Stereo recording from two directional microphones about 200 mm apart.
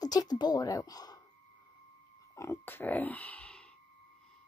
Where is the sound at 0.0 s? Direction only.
20° left (ahead or behind).